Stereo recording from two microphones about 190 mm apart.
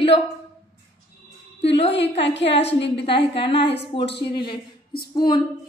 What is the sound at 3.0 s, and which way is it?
A woman's voice, 30° left (ahead or behind).